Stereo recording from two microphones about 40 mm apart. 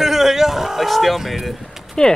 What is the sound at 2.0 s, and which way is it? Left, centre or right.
Speech, centre.